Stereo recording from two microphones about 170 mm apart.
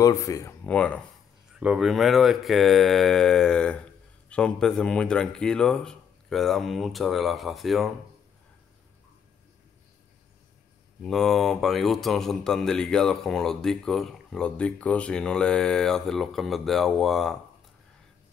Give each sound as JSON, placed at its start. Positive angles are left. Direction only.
{"t": 0.0, "sound": "speech", "side_deg": 20}
{"t": 0.7, "sound": "speech", "side_deg": 5}
{"t": 1.6, "sound": "speech", "side_deg": -5}
{"t": 11.0, "sound": "speech", "side_deg": 0}